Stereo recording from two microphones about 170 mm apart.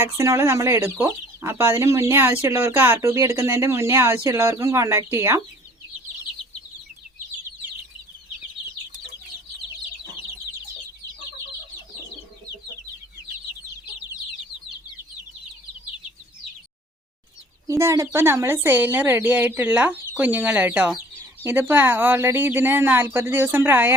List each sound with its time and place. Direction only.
0.2 s speech: 15° right (ahead or behind)
17.7 s speech: 15° right (ahead or behind)